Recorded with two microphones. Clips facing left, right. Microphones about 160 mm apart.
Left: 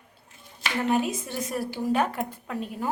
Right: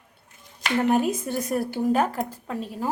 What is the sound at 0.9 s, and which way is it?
A woman's voice, 50° right (ahead or behind).